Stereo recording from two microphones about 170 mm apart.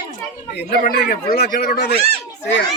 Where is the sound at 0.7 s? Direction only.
65° left (ahead or behind).